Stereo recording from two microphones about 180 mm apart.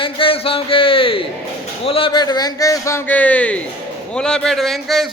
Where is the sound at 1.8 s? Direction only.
30° left (ahead or behind).